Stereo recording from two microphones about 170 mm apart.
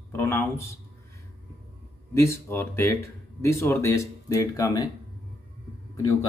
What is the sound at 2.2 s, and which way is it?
Speech, 15° left (ahead or behind).